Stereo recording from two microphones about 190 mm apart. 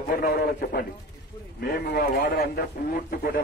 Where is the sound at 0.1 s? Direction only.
55° left (ahead or behind).